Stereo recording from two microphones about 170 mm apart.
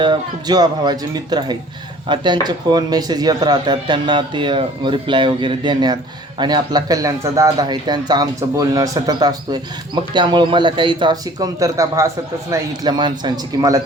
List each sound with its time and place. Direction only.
0.0 s speech: 25° right (ahead or behind)